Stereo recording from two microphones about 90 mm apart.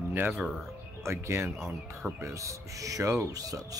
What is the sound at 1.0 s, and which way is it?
Speech, 30° right (ahead or behind).